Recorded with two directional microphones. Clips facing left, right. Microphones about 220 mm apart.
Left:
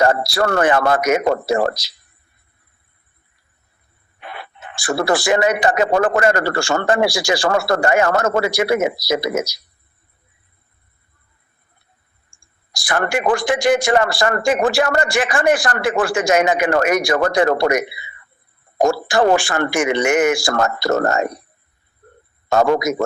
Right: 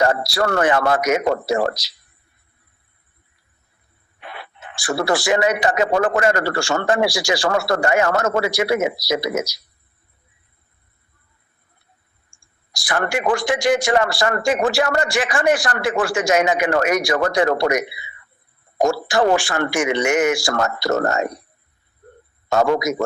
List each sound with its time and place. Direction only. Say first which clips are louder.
0.0 s speech: left 2 dB; 55° left (ahead or behind)
4.3 s speech: left 2 dB; 50° left (ahead or behind)
12.7 s speech: left 2 dB; 55° left (ahead or behind)
22.4 s speech: left 2 dB; 50° left (ahead or behind)